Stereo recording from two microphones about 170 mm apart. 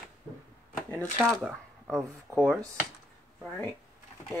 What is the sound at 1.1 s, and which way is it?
Speech, 10° right (ahead or behind).